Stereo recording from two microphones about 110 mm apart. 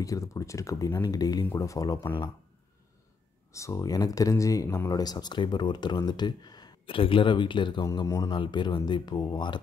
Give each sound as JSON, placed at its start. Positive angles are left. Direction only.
{"t": 0.0, "sound": "speech", "side_deg": 30}
{"t": 3.5, "sound": "speech", "side_deg": 25}
{"t": 7.0, "sound": "speech", "side_deg": 50}
{"t": 7.8, "sound": "speech", "side_deg": 35}